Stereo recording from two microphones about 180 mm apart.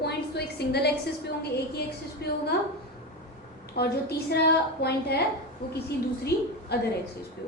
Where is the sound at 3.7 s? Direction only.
65° left (ahead or behind).